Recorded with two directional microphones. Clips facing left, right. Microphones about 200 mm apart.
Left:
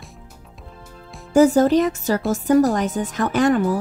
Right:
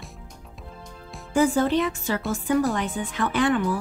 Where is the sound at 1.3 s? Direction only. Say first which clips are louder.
Left 7 dB; 40° left (ahead or behind).